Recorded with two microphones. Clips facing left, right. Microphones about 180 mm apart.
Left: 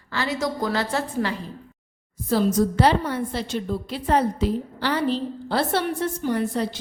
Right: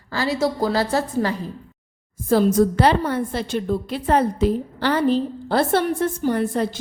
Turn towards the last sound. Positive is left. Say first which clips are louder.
# right 3 dB
turn(degrees=-50)  # may be behind; listen again after turning